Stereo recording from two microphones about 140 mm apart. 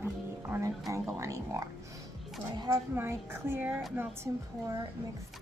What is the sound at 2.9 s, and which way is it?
Speech, 15° right (ahead or behind).